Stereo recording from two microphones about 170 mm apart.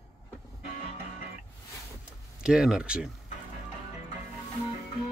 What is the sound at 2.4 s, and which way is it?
Speech, 5° right (ahead or behind).